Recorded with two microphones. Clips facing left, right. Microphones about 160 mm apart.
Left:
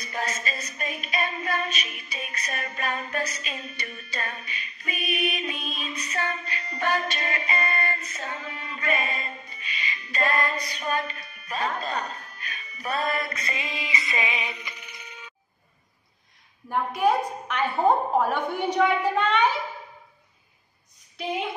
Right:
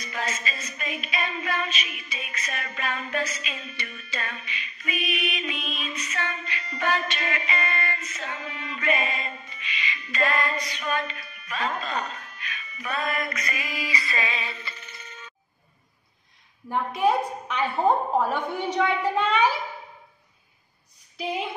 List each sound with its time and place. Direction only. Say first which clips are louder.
0.1 s a sound: left 1 dB; 40° left (ahead or behind)
9.0 s music: right 1 dB; 45° left (ahead or behind)
10.1 s speech: even; 40° left (ahead or behind); by 15.3 s 10° left (ahead or behind)
16.6 s a woman's voice: even; centre (ahead or behind)
21.2 s a woman's voice: even; centre (ahead or behind)